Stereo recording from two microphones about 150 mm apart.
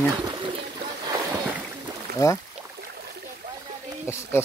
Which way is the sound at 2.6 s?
45° right (ahead or behind).